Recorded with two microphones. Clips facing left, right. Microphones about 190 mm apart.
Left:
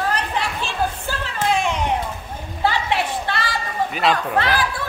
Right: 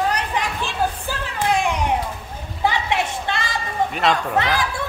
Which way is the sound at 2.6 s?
20° right (ahead or behind).